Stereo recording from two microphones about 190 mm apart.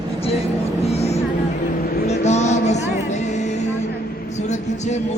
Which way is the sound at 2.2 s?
35° left (ahead or behind).